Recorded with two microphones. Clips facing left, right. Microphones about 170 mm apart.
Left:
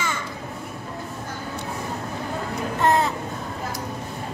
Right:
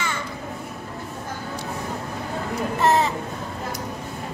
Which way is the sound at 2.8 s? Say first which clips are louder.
Even; centre (ahead or behind).